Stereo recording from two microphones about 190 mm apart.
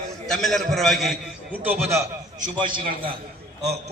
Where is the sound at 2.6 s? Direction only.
25° right (ahead or behind).